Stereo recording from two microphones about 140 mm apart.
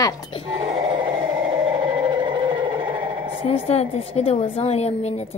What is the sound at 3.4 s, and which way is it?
A woman's voice, 45° left (ahead or behind).